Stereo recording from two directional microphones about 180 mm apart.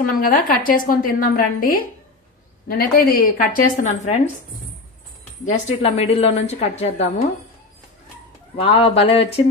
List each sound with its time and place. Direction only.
0.1 s a woman's voice: 55° left (ahead or behind)
5.4 s a woman's voice: 40° left (ahead or behind)
8.5 s a woman's voice: 30° left (ahead or behind)